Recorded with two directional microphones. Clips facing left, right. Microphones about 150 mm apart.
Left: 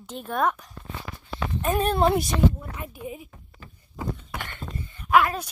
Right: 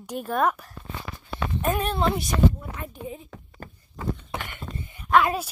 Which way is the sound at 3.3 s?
90° right.